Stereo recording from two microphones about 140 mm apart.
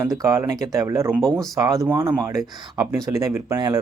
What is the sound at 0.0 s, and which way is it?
Speech, 20° right (ahead or behind).